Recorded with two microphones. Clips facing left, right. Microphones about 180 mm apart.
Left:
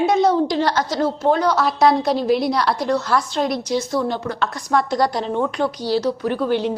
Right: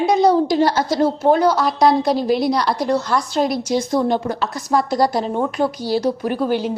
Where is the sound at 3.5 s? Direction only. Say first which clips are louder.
Right 2 dB; 45° right (ahead or behind).